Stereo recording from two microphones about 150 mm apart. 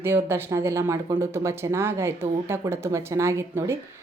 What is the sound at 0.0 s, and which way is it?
A woman's voice, 15° right (ahead or behind).